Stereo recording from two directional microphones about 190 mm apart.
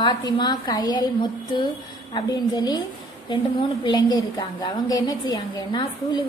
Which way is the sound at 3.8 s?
20° left (ahead or behind).